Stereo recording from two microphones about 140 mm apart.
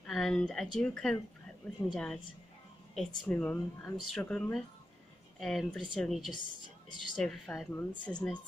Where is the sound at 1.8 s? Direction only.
15° left (ahead or behind).